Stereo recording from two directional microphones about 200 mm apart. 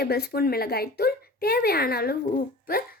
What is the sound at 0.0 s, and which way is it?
A woman's voice, 50° left (ahead or behind).